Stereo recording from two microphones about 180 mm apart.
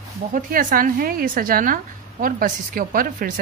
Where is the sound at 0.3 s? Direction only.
50° right (ahead or behind).